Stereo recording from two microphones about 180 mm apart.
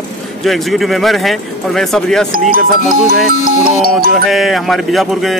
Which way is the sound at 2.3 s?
50° right (ahead or behind).